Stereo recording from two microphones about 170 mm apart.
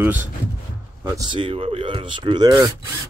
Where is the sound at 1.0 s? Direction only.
20° right (ahead or behind).